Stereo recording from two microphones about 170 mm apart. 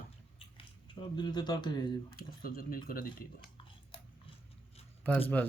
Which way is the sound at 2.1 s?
60° left (ahead or behind).